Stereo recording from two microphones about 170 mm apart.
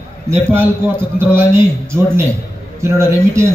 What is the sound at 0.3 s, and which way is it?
A man's voice, 15° right (ahead or behind).